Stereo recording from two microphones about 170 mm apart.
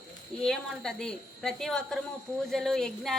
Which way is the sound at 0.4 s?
5° left (ahead or behind).